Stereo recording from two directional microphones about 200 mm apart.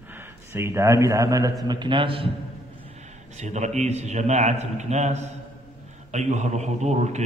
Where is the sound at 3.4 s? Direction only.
35° right (ahead or behind).